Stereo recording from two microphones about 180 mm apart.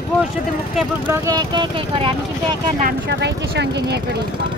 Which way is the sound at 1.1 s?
20° right (ahead or behind).